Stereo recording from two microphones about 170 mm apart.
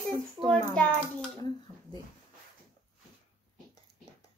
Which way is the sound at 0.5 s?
5° left (ahead or behind).